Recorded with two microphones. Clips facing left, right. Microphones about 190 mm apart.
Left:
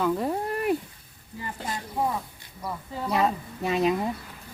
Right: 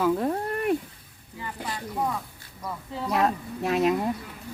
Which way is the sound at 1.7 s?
45° left (ahead or behind).